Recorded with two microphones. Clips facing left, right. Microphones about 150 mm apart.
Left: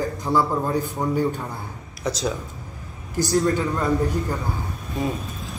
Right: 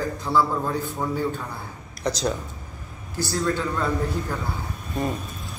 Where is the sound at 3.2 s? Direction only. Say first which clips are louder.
Left 4 dB; 15° left (ahead or behind).